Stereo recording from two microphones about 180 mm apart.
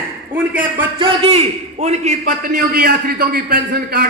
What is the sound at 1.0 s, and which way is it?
A man's voice, 30° right (ahead or behind).